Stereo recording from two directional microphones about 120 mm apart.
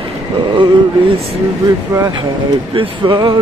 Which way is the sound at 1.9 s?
35° right (ahead or behind).